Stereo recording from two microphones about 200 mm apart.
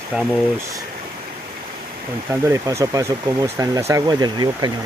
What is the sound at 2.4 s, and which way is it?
Speech, 15° right (ahead or behind).